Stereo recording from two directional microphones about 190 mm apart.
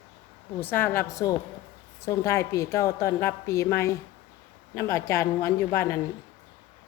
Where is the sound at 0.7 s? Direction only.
10° left (ahead or behind).